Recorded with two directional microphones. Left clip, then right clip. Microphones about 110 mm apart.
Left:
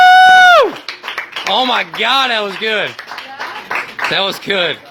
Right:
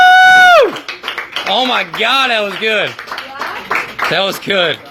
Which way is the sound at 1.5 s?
65° left (ahead or behind).